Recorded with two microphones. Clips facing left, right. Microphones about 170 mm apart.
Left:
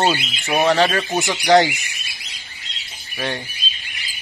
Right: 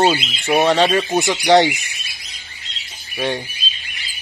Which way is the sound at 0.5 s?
20° right (ahead or behind).